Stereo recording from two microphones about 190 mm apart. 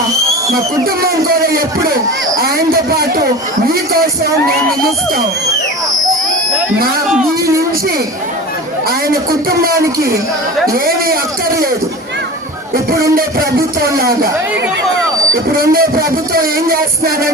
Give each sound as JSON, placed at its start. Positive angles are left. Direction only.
{"t": 0.5, "sound": "speech", "side_deg": -50}
{"t": 3.9, "sound": "speech", "side_deg": -50}
{"t": 8.9, "sound": "speech", "side_deg": -50}
{"t": 13.8, "sound": "speech", "side_deg": -50}
{"t": 15.5, "sound": "speech", "side_deg": -50}